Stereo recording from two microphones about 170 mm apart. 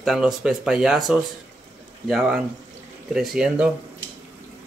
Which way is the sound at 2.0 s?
Centre (ahead or behind).